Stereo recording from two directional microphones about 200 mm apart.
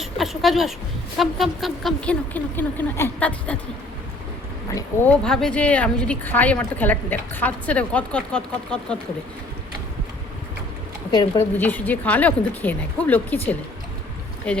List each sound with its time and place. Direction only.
0.0 s a woman's voice: centre (ahead or behind)
4.7 s speech: 10° left (ahead or behind)
11.1 s a woman's voice: 20° left (ahead or behind)
11.5 s speech: 10° left (ahead or behind)
14.5 s speech: 5° left (ahead or behind)